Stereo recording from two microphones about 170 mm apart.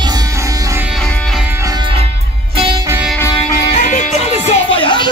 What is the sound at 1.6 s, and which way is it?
Music, 30° right (ahead or behind).